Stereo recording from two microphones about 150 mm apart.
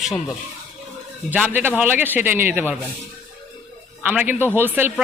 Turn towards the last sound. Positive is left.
turn(degrees=-15)  # may be behind; listen again after turning